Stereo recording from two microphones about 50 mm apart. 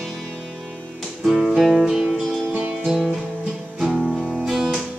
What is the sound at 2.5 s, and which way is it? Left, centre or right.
Music, centre.